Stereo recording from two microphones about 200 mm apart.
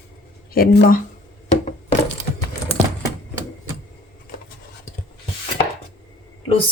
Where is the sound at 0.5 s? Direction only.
50° left (ahead or behind).